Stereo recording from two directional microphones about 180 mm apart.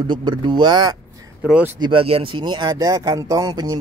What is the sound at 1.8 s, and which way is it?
Speech, 30° right (ahead or behind).